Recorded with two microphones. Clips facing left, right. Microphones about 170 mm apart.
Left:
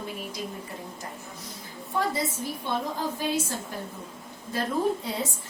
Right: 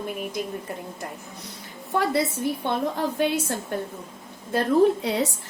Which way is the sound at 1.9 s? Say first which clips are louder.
Right 5 dB; 70° right (ahead or behind).